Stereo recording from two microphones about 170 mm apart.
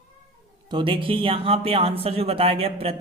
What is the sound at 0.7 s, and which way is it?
Speech, 30° right (ahead or behind).